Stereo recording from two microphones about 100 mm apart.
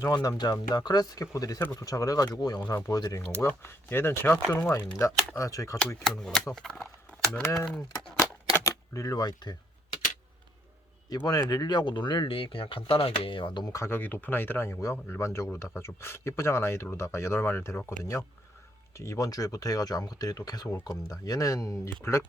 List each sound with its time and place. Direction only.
0.0 s speech: 40° left (ahead or behind)
3.4 s speech: 25° left (ahead or behind)
6.1 s speech: 5° left (ahead or behind)
8.5 s speech: 30° left (ahead or behind)
11.3 s speech: 40° left (ahead or behind)
13.7 s speech: 25° left (ahead or behind)